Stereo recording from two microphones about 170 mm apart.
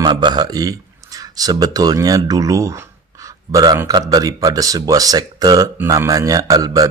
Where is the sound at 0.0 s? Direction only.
25° right (ahead or behind).